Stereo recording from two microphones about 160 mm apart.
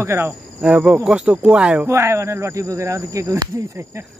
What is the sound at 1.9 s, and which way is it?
Speech, 20° right (ahead or behind).